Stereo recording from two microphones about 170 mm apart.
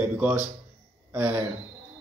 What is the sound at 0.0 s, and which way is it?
A woman's voice, 10° right (ahead or behind).